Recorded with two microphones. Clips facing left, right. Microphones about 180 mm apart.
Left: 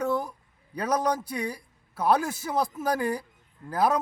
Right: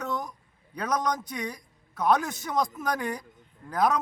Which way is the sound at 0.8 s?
10° left (ahead or behind).